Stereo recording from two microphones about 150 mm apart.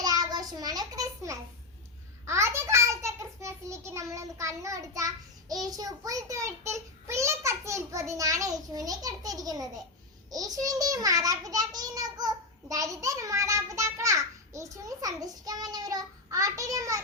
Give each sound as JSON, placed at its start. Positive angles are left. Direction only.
{"t": 0.0, "sound": "a sound", "side_deg": -25}
{"t": 4.1, "sound": "child singing", "side_deg": -20}
{"t": 10.3, "sound": "a child's voice", "side_deg": -25}